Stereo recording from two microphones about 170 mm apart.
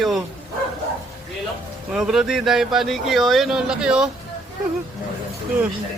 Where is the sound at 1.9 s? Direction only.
5° right (ahead or behind).